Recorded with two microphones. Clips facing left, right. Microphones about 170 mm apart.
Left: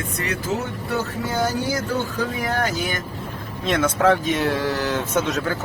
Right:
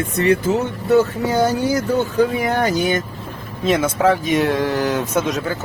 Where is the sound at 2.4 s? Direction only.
20° right (ahead or behind).